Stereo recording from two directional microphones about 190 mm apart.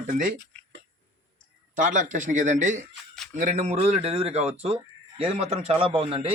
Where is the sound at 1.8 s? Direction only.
40° right (ahead or behind).